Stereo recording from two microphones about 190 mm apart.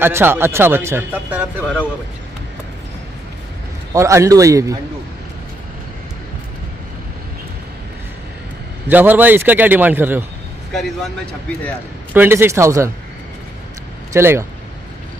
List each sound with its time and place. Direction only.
0.0 s a man's voice: 10° right (ahead or behind)
3.9 s a man's voice: 15° right (ahead or behind)
8.8 s a man's voice: 10° right (ahead or behind)
10.7 s speech: centre (ahead or behind)
12.1 s a man's voice: 10° right (ahead or behind)
14.1 s a man's voice: 15° right (ahead or behind)